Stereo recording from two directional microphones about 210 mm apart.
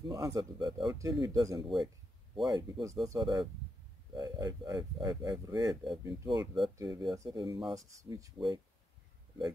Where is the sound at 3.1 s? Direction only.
20° right (ahead or behind).